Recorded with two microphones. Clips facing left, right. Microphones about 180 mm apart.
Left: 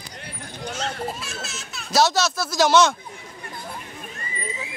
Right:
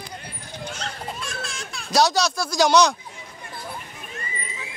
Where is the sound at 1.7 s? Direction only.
Centre (ahead or behind).